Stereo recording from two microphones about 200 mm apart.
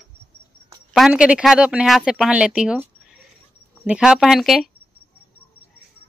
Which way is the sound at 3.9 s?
5° right (ahead or behind).